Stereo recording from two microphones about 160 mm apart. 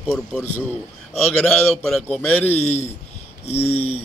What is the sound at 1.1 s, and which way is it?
Speech, 10° left (ahead or behind).